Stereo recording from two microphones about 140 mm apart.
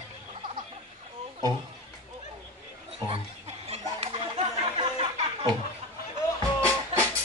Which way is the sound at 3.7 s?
45° right (ahead or behind).